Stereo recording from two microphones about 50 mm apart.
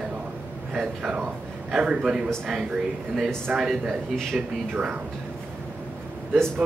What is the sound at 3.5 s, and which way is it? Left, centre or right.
A man's voice, centre.